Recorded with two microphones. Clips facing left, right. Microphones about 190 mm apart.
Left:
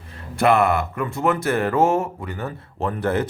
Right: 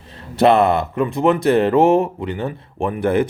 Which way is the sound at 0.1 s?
20° right (ahead or behind).